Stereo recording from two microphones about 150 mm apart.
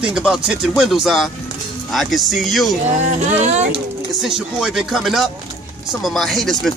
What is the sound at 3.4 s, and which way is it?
Speech, 50° right (ahead or behind).